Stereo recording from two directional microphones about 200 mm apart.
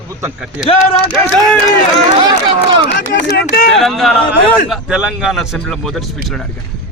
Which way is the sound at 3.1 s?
45° left (ahead or behind).